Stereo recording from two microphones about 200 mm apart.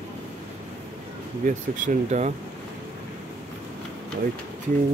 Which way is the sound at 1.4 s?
40° right (ahead or behind).